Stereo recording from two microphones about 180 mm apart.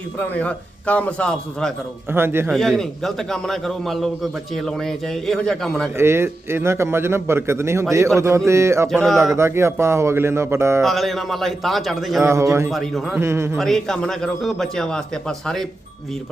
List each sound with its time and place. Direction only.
0.2 s a man's voice: 10° left (ahead or behind)
2.1 s a man's voice: 15° right (ahead or behind)
2.5 s a man's voice: centre (ahead or behind)
6.0 s a man's voice: 15° right (ahead or behind)
8.9 s a man's voice: centre (ahead or behind)
9.3 s a man's voice: 15° right (ahead or behind)
10.8 s a man's voice: centre (ahead or behind)
12.2 s a man's voice: 15° right (ahead or behind)
12.7 s a man's voice: centre (ahead or behind)
13.1 s a man's voice: 15° right (ahead or behind)
13.6 s a man's voice: centre (ahead or behind)